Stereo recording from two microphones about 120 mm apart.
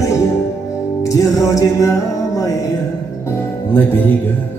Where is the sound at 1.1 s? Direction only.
25° left (ahead or behind).